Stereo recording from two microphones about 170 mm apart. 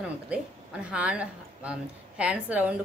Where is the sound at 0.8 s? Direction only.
5° right (ahead or behind).